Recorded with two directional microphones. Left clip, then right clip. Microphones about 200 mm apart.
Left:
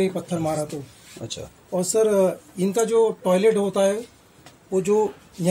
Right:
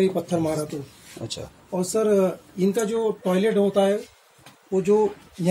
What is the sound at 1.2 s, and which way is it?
Speech, 5° right (ahead or behind).